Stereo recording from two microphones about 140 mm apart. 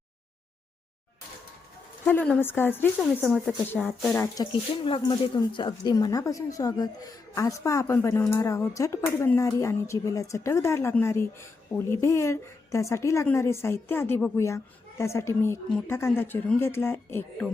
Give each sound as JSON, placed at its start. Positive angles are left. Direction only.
{"t": 2.0, "sound": "speech", "side_deg": 10}
{"t": 4.4, "sound": "a woman's voice", "side_deg": 40}